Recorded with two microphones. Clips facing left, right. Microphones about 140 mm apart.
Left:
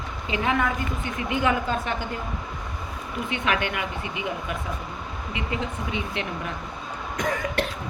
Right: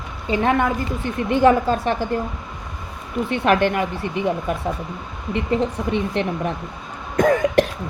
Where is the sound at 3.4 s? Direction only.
40° right (ahead or behind).